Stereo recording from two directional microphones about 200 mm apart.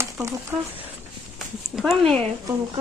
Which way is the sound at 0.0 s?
15° right (ahead or behind).